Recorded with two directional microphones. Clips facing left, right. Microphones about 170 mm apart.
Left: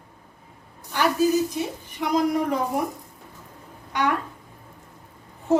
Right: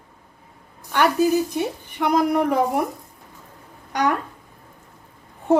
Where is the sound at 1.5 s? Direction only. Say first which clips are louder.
Right 4 dB; 60° right (ahead or behind).